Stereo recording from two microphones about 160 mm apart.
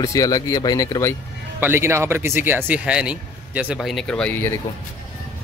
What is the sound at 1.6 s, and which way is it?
Speech, 15° right (ahead or behind).